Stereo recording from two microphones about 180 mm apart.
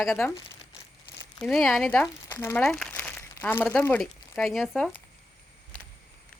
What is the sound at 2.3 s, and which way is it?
Speech, 15° left (ahead or behind).